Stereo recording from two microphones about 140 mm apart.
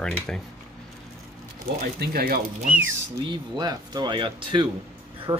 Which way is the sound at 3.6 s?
30° right (ahead or behind).